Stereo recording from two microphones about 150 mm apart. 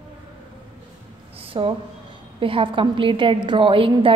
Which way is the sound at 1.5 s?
35° right (ahead or behind).